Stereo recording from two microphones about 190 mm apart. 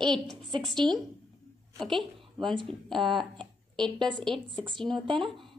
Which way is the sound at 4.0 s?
5° left (ahead or behind).